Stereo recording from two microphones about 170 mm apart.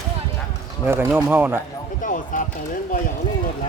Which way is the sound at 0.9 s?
10° right (ahead or behind).